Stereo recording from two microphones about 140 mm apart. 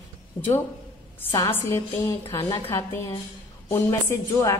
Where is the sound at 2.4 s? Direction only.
35° left (ahead or behind).